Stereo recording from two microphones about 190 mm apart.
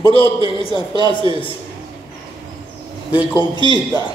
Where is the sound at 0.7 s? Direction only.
20° right (ahead or behind).